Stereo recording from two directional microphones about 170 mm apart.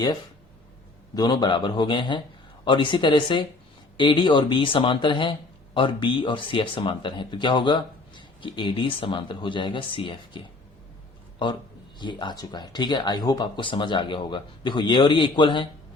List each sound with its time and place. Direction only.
1.1 s speech: 25° left (ahead or behind)
11.9 s speech: 25° left (ahead or behind)